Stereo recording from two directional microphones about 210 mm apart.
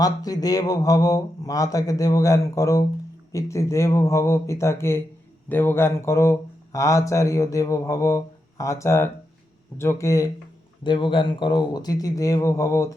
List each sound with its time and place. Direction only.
0.0 s speech: 15° left (ahead or behind)